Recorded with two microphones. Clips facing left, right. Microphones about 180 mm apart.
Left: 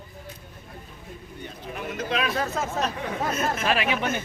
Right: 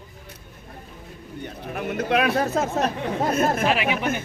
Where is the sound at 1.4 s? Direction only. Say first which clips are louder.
Right 5 dB; 60° right (ahead or behind).